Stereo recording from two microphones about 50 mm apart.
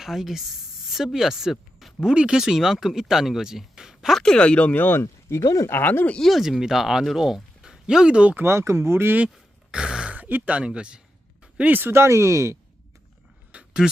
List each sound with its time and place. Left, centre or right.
0.0 s speech: centre
4.4 s speech: left
4.7 s speech: left
5.3 s speech: left
5.8 s speech: left
6.1 s speech: centre
6.4 s speech: centre
8.4 s speech: right
9.7 s a sound: centre
10.2 s speech: right; by 11.0 s centre
11.9 s speech: right
13.5 s a sound: right